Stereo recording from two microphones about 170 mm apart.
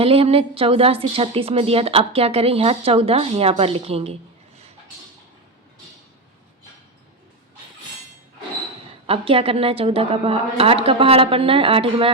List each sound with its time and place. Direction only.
0.0 s speech: 35° right (ahead or behind)
9.0 s speech: 35° right (ahead or behind)